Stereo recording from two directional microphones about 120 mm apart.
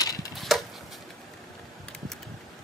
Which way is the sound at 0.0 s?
30° left (ahead or behind).